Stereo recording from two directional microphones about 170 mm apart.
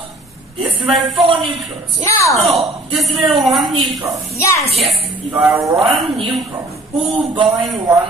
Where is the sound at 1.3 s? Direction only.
30° right (ahead or behind).